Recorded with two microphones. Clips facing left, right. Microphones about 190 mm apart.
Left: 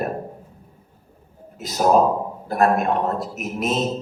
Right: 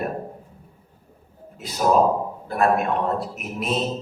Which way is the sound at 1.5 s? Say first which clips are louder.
Left 5 dB; 40° left (ahead or behind).